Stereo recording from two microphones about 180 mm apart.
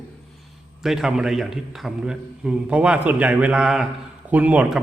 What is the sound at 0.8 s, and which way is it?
A man's voice, 5° right (ahead or behind).